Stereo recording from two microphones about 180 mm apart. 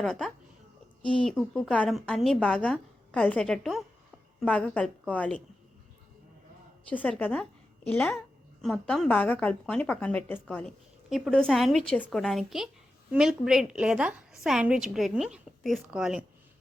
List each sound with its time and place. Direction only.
0.0 s a woman's voice: centre (ahead or behind)
6.9 s a woman's voice: 10° left (ahead or behind)